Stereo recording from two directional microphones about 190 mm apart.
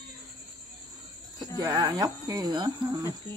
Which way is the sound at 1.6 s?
20° right (ahead or behind).